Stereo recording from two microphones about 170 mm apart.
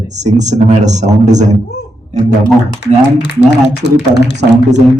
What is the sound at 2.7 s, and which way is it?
Speech, 85° left.